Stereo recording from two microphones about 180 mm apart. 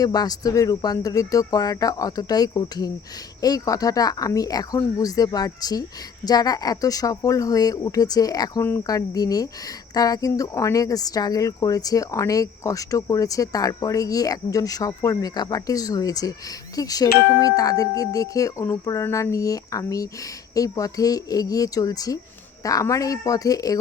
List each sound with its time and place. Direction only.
0.0 s speech: 20° left (ahead or behind)